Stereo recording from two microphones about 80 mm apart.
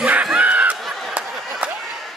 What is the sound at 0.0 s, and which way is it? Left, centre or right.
Snicker, centre.